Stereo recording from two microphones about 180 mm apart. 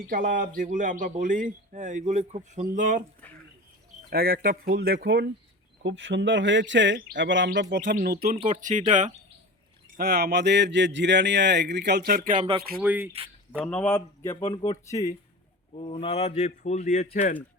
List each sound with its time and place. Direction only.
0.1 s a man's voice: 50° right (ahead or behind)
3.2 s speech: 10° left (ahead or behind)
4.1 s speech: 55° right (ahead or behind)
5.8 s speech: 90° right; by 7.9 s 75° right (ahead or behind)
8.0 s speech: 60° right (ahead or behind)
8.4 s a man's voice: 45° right (ahead or behind)
10.0 s speech: 65° right (ahead or behind); by 12.5 s 45° right (ahead or behind)
12.8 s speech: 10° right (ahead or behind)
13.7 s speech: 10° left (ahead or behind)
14.4 s speech: 30° left (ahead or behind)
14.8 s speech: 20° left (ahead or behind)
15.7 s a man's voice: 30° left (ahead or behind)